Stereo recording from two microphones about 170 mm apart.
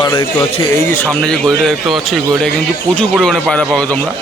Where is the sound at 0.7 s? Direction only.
15° left (ahead or behind).